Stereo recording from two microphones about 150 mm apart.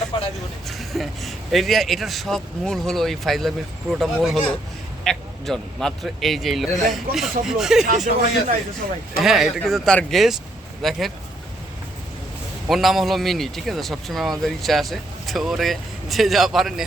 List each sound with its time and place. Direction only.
0.1 s a sound: 35° left (ahead or behind)
0.7 s speech: centre (ahead or behind)
7.9 s speech: 60° right (ahead or behind)
9.2 s speech: centre (ahead or behind)
12.6 s speech: centre (ahead or behind)